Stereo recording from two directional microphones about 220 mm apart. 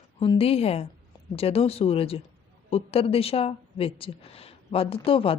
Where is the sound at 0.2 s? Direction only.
25° left (ahead or behind).